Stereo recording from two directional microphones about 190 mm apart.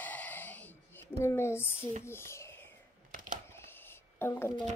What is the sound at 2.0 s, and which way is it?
Speech, 15° left (ahead or behind).